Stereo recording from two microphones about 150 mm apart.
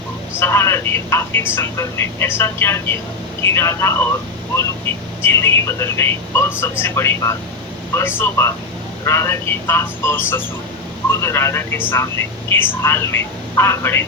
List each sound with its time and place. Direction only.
0.3 s speech: 15° left (ahead or behind)